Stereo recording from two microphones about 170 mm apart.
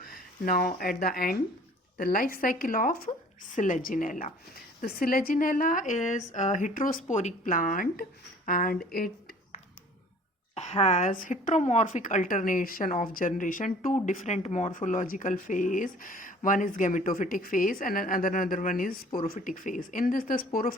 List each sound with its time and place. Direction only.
0.0 s a sound: 60° left (ahead or behind)
0.8 s a woman's voice: 60° left (ahead or behind)
10.5 s a woman's voice: 40° left (ahead or behind); by 20.7 s 60° left (ahead or behind)